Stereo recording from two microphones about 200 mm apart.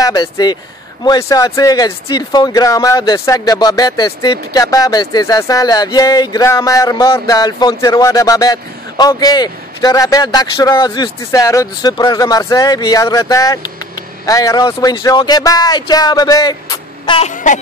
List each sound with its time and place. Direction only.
0.0 s speech: 20° left (ahead or behind)
17.3 s music: 40° left (ahead or behind)